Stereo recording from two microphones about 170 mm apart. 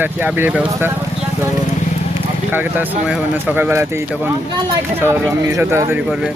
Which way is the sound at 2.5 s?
10° right (ahead or behind).